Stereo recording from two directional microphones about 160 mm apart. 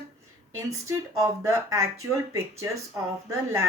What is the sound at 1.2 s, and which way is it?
Speech, 20° right (ahead or behind).